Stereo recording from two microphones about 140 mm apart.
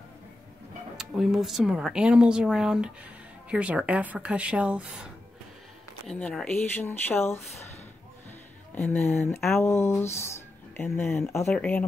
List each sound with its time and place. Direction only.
0.9 s a woman's voice: centre (ahead or behind)
6.0 s speech: 5° left (ahead or behind)
8.7 s speech: 15° left (ahead or behind)